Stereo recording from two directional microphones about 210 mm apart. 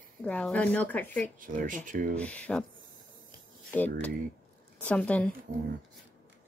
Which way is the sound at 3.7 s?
10° left (ahead or behind).